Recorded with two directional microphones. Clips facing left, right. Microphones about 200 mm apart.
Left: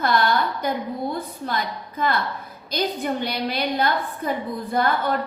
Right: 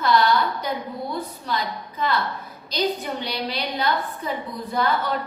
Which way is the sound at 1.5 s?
50° left (ahead or behind).